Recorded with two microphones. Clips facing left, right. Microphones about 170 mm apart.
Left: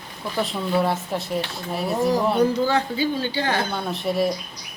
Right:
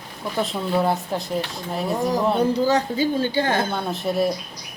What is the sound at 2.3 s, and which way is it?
A woman's voice, 30° right (ahead or behind).